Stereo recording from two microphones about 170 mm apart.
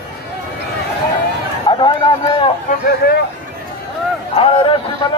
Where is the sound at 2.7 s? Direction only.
65° left (ahead or behind).